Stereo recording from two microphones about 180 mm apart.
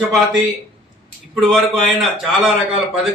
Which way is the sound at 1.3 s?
Centre (ahead or behind).